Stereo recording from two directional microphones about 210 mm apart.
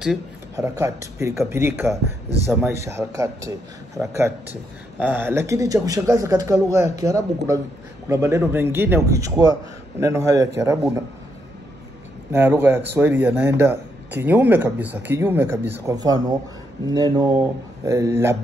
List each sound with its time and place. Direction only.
0.6 s a man's voice: 15° right (ahead or behind)
12.3 s a man's voice: 10° right (ahead or behind)